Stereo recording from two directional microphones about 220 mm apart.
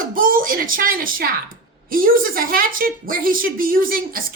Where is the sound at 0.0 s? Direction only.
40° right (ahead or behind).